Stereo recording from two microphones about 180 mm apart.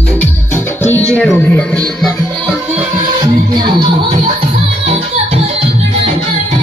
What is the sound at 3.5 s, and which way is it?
Music, 25° right (ahead or behind).